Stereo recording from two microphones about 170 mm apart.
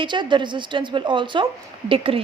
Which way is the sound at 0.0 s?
25° right (ahead or behind).